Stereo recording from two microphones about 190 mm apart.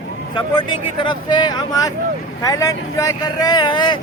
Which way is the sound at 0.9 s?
25° left (ahead or behind).